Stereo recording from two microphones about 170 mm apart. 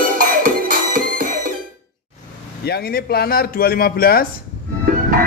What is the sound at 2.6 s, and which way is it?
Speech, 65° left (ahead or behind).